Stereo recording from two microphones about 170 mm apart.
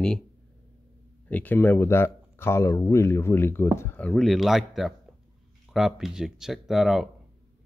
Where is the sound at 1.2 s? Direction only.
10° left (ahead or behind).